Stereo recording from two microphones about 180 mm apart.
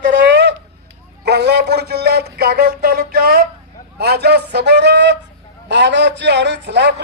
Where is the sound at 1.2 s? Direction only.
65° right (ahead or behind).